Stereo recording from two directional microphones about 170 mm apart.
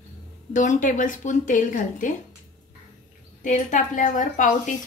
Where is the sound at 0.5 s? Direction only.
50° left (ahead or behind).